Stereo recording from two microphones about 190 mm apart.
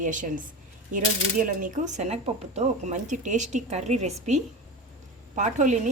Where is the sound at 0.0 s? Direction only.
45° right (ahead or behind).